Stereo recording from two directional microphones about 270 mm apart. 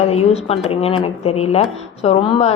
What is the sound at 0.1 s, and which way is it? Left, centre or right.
A woman's voice, left.